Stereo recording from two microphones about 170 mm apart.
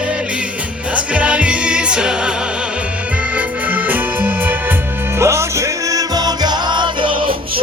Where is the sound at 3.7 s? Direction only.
10° right (ahead or behind).